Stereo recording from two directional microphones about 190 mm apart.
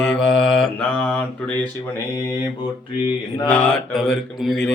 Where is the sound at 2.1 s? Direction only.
20° left (ahead or behind).